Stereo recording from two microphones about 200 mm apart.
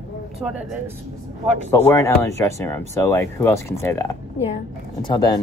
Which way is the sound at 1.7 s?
15° left (ahead or behind).